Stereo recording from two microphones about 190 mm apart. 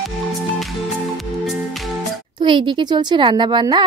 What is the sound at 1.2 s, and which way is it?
Music, centre (ahead or behind).